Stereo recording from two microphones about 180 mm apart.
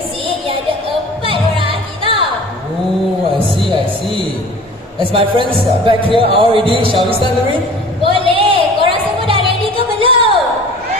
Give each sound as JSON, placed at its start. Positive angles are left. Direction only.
{"t": 1.2, "sound": "music", "side_deg": -30}
{"t": 5.1, "sound": "speech", "side_deg": -30}
{"t": 8.1, "sound": "a sound", "side_deg": -30}